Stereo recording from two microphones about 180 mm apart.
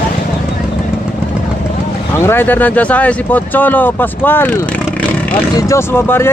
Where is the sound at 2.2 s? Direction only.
10° left (ahead or behind).